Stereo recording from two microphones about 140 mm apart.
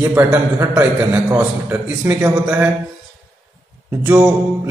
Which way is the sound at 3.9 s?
15° right (ahead or behind).